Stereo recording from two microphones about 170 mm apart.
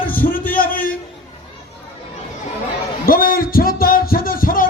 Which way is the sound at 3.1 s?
55° left (ahead or behind).